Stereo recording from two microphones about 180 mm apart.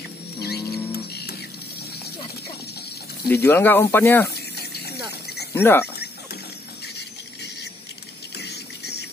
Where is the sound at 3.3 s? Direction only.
10° left (ahead or behind).